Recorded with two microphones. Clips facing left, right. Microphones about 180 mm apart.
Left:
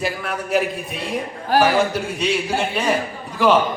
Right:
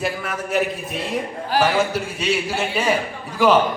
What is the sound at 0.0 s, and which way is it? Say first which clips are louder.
Speech: even; centre (ahead or behind).